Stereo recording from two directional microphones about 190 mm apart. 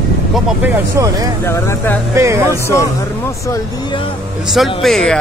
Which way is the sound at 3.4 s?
15° left (ahead or behind).